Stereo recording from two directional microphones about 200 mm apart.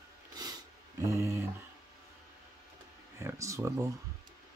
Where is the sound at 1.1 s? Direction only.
15° right (ahead or behind).